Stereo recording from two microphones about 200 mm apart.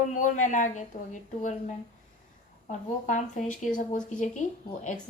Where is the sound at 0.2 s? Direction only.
40° left (ahead or behind).